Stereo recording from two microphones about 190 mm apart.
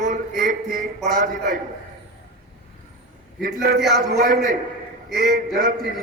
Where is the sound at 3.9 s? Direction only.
55° right (ahead or behind).